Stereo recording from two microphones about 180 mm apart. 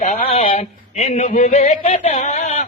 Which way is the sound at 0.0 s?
40° left (ahead or behind).